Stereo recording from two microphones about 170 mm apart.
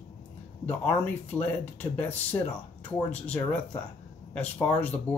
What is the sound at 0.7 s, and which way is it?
Speech, 10° left (ahead or behind).